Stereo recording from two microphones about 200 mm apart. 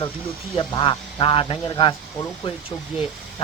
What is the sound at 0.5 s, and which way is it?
Speech, 25° left (ahead or behind).